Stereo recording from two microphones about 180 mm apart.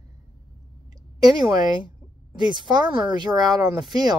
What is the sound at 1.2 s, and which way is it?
Speech, 20° right (ahead or behind).